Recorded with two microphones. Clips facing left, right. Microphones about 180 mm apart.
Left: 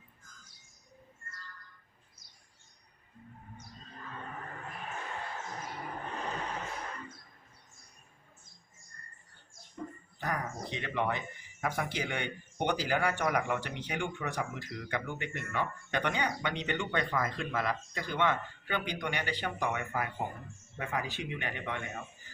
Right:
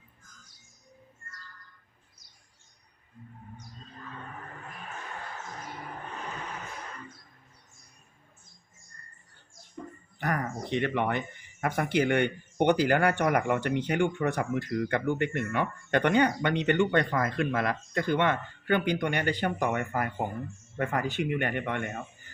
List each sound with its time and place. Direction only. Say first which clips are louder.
10.2 s speech: right 5 dB; 65° right (ahead or behind)